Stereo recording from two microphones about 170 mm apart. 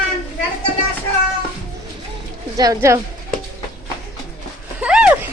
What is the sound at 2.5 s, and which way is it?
Speech, 20° right (ahead or behind).